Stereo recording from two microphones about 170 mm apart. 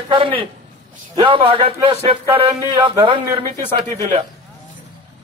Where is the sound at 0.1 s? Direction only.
30° right (ahead or behind).